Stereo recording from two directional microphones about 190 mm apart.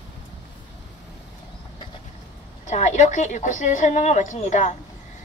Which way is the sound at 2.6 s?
40° left (ahead or behind).